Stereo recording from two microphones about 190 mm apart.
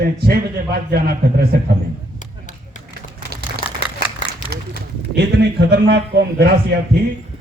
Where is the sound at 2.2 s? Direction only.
40° left (ahead or behind).